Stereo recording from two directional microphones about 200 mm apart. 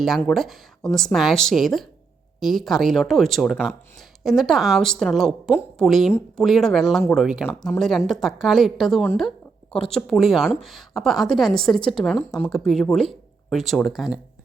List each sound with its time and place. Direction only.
0.2 s a woman's voice: centre (ahead or behind)